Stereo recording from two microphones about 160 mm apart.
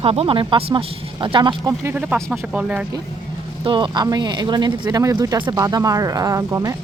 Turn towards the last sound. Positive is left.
turn(degrees=-20)  # may be behind; listen again after turning